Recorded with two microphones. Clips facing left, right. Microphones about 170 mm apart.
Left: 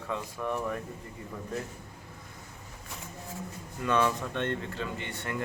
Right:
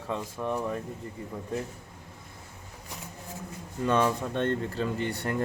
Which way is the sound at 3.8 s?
30° right (ahead or behind).